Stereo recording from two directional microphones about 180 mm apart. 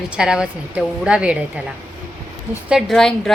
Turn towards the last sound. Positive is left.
turn(degrees=0)  # may be behind; listen again after turning